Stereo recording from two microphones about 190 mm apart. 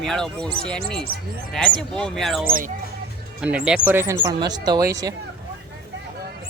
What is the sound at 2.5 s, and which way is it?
Speech, 45° right (ahead or behind).